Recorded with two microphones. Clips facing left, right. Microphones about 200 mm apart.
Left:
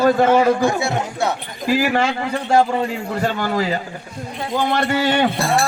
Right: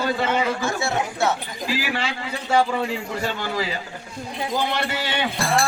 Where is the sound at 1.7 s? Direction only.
50° left (ahead or behind).